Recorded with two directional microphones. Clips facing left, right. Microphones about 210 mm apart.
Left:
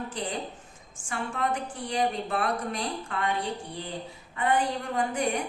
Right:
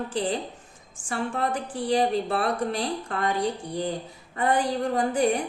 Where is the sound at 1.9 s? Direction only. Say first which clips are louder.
Right 5 dB; 35° right (ahead or behind).